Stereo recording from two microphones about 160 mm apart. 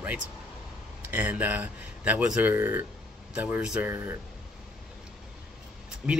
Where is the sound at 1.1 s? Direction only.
10° right (ahead or behind).